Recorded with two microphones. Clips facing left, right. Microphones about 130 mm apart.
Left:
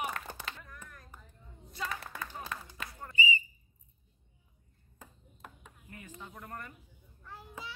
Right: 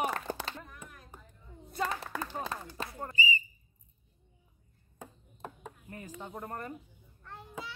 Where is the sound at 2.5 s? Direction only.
35° right (ahead or behind).